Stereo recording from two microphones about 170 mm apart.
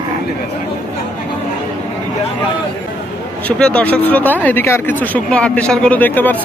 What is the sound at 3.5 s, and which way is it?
A man's voice, 5° left (ahead or behind).